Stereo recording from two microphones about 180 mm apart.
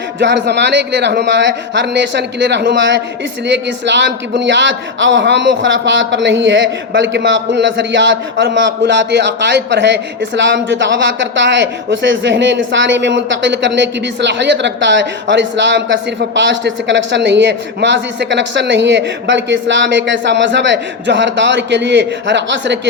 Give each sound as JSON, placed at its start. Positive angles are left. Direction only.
{"t": 0.2, "sound": "a man's voice", "side_deg": -75}